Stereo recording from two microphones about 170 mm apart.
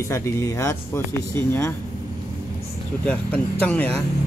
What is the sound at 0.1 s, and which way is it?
Speech, 20° left (ahead or behind).